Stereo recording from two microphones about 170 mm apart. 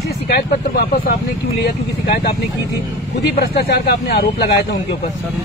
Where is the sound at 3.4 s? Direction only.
70° left (ahead or behind).